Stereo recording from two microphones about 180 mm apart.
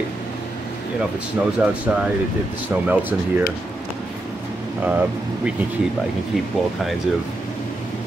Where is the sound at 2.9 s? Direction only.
10° right (ahead or behind).